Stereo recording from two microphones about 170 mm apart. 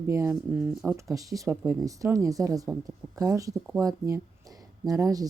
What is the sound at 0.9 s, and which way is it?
Speech, 20° right (ahead or behind).